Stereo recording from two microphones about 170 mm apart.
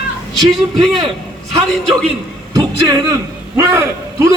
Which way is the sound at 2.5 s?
25° right (ahead or behind).